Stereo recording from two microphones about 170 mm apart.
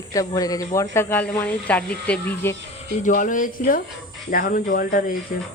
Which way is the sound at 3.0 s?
50° left (ahead or behind).